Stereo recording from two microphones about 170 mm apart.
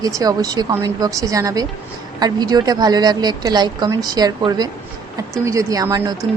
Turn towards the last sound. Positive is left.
turn(degrees=-20)  # may be behind; listen again after turning